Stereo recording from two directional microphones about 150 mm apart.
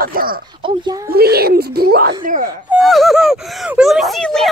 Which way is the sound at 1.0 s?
90° right.